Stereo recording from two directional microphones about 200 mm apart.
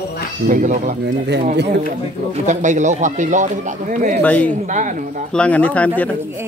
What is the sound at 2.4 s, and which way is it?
Speech, 35° right (ahead or behind).